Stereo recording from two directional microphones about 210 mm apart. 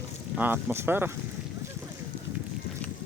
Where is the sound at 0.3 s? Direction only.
10° right (ahead or behind).